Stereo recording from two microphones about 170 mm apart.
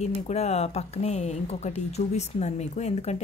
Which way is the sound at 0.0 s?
40° left (ahead or behind).